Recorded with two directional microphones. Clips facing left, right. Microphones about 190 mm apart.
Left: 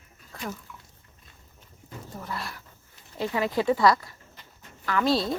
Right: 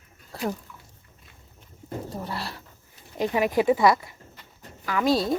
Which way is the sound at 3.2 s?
15° right (ahead or behind).